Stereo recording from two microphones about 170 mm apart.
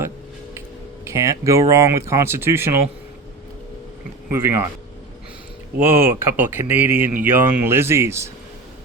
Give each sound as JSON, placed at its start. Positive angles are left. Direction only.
{"t": 1.0, "sound": "speech", "side_deg": -20}
{"t": 4.3, "sound": "speech", "side_deg": -15}
{"t": 5.8, "sound": "speech", "side_deg": -15}